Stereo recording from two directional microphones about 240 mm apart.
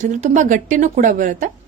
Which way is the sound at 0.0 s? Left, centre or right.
Right.